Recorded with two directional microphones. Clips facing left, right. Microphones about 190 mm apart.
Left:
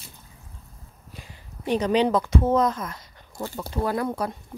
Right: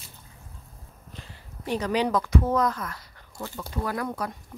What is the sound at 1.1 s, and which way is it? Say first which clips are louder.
Speech: left 1 dB; 20° left (ahead or behind).